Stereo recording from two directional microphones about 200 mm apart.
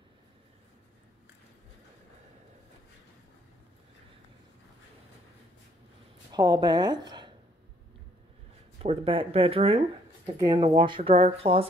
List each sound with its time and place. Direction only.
6.3 s a woman's voice: 20° right (ahead or behind)
8.8 s speech: 25° right (ahead or behind)